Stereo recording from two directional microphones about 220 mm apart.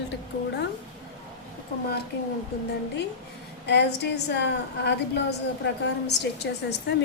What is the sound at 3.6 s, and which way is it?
A woman's voice, 50° left (ahead or behind).